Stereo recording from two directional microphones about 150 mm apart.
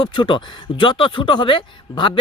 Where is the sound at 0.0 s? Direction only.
30° left (ahead or behind).